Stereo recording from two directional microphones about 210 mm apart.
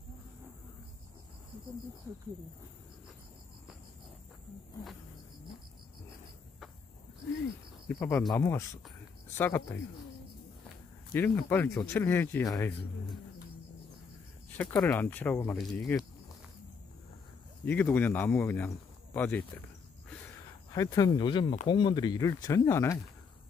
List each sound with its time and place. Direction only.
7.9 s speech: 5° left (ahead or behind)
11.1 s speech: 10° left (ahead or behind)
14.6 s speech: 5° left (ahead or behind)
17.6 s speech: 10° left (ahead or behind)